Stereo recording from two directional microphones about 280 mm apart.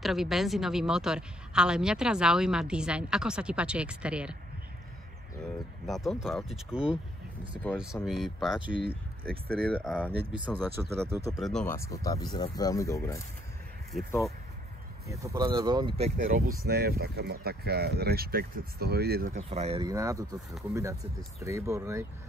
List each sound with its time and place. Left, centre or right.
0.0 s a woman's voice: centre
5.9 s a woman's voice: centre
9.3 s speech: right
9.7 s a woman's voice: centre
10.8 s speech: centre
11.3 s speech: centre
13.9 s a woman's voice: centre
15.0 s speech: centre
16.5 s speech: right; by 22.0 s centre